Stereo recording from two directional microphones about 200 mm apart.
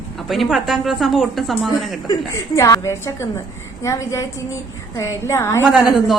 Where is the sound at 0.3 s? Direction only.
Centre (ahead or behind).